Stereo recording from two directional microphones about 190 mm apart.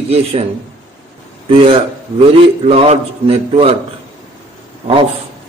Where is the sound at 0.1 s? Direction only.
30° right (ahead or behind).